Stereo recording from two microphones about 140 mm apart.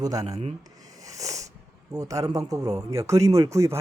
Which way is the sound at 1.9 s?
25° right (ahead or behind).